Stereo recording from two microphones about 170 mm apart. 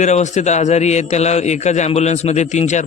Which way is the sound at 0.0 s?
45° left (ahead or behind).